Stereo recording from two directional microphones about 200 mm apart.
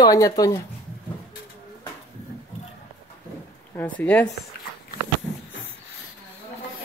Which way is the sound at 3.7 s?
5° left (ahead or behind).